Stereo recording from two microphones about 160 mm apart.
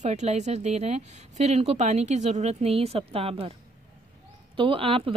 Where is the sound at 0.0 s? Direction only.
45° right (ahead or behind).